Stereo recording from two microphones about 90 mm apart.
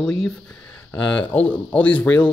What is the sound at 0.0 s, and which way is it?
Speech, 5° left (ahead or behind).